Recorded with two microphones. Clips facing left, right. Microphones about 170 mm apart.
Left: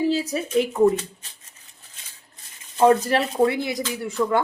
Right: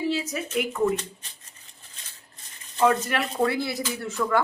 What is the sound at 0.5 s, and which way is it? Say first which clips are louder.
Speech: left 6 dB; 30° left (ahead or behind).